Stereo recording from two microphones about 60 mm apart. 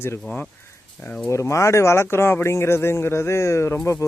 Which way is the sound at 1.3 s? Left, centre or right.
Left.